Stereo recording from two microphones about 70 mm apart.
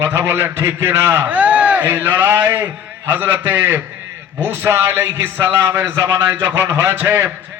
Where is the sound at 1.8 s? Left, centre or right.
Right.